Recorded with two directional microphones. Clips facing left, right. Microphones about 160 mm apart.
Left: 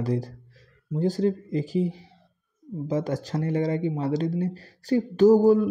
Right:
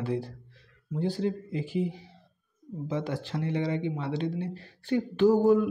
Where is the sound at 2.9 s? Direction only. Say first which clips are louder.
Left 5 dB; 40° left (ahead or behind).